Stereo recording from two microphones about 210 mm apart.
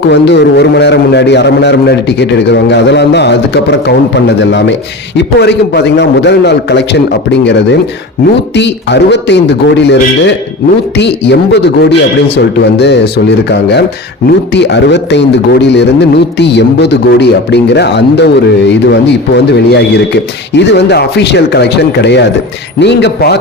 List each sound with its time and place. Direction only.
0.1 s a man's voice: 55° left (ahead or behind)